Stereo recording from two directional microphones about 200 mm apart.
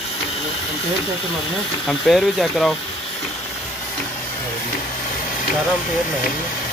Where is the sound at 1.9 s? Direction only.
Centre (ahead or behind).